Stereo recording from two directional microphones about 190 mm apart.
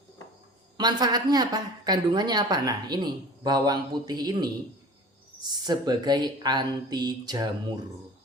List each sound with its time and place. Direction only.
0.8 s a woman's voice: 20° right (ahead or behind)
5.5 s a woman's voice: 20° right (ahead or behind)